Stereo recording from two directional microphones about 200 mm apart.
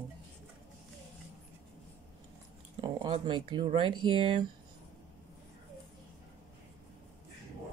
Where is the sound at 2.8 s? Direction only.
25° right (ahead or behind).